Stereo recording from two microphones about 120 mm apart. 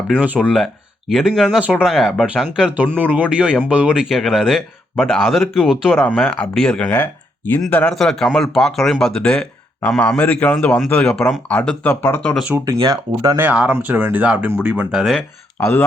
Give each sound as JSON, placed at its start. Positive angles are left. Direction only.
{"t": 0.2, "sound": "speech", "side_deg": -10}
{"t": 6.0, "sound": "speech", "side_deg": 15}
{"t": 6.8, "sound": "speech", "side_deg": 15}
{"t": 12.8, "sound": "speech", "side_deg": -30}
{"t": 13.4, "sound": "speech", "side_deg": -10}
{"t": 14.9, "sound": "speech", "side_deg": 0}